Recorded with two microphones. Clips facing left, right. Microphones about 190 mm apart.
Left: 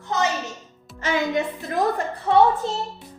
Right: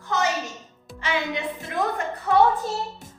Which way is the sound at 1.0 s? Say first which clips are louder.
Left 4 dB; 45° left (ahead or behind).